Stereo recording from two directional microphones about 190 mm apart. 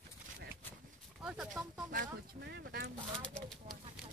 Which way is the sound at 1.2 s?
Centre (ahead or behind).